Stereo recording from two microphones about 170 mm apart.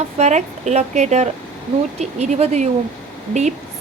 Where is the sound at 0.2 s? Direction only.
45° right (ahead or behind).